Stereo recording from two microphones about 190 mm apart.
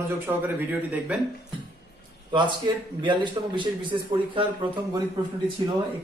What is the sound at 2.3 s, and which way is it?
A man's voice, 25° right (ahead or behind).